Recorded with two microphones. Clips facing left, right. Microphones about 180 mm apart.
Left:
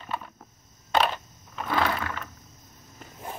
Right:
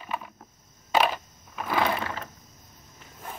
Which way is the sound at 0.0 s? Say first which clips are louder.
Even; 10° right (ahead or behind).